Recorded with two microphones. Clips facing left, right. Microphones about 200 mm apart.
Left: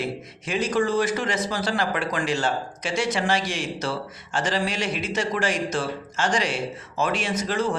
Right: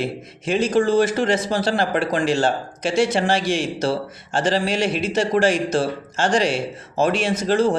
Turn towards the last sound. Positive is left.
turn(degrees=-30)  # may be behind; listen again after turning